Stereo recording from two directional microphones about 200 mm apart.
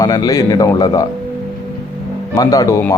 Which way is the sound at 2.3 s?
15° left (ahead or behind).